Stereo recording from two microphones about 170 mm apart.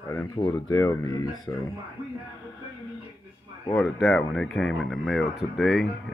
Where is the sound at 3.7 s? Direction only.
5° left (ahead or behind).